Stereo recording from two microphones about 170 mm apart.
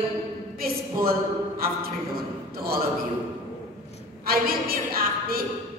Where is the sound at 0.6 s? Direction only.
60° right (ahead or behind).